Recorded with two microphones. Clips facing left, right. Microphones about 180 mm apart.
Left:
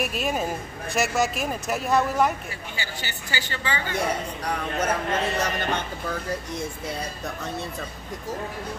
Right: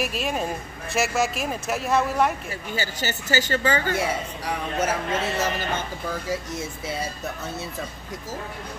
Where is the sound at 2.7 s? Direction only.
45° right (ahead or behind).